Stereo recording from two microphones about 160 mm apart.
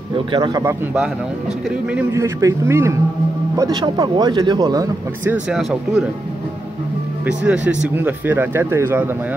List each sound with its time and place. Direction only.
0.3 s speech: 25° right (ahead or behind)
2.1 s speech: 15° right (ahead or behind)
5.3 s speech: centre (ahead or behind)
7.2 s speech: 5° right (ahead or behind)